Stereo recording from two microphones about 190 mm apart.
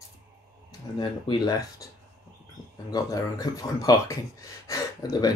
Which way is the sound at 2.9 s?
20° left (ahead or behind).